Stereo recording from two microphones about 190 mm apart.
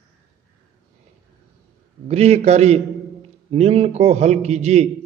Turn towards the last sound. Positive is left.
turn(degrees=-35)  # may be behind; listen again after turning